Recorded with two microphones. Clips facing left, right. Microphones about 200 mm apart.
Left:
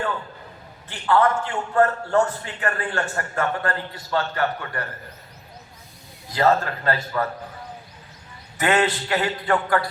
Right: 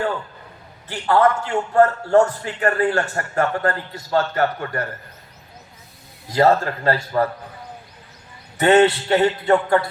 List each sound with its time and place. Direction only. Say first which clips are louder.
0.9 s a man's voice: right 3 dB; 40° right (ahead or behind)
6.3 s a man's voice: right 3 dB; 40° right (ahead or behind)
8.5 s a man's voice: right 7 dB; 35° right (ahead or behind)